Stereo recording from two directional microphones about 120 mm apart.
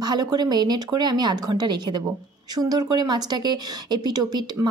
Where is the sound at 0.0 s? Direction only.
35° right (ahead or behind).